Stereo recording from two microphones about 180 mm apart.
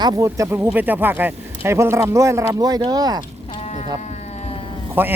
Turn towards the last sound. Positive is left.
turn(degrees=-10)  # may be behind; listen again after turning